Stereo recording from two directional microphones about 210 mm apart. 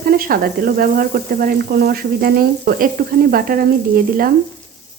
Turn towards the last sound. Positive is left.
turn(degrees=-45)  # may be behind; listen again after turning